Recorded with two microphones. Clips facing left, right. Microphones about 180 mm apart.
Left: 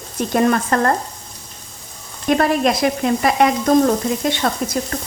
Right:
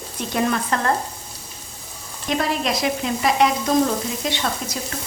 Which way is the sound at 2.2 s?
50° left (ahead or behind).